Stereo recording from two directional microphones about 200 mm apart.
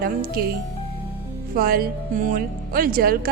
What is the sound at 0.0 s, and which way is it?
Speech, 50° right (ahead or behind).